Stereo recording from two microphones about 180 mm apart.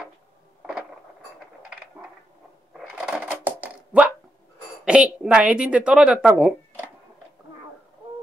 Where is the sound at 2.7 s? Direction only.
5° right (ahead or behind).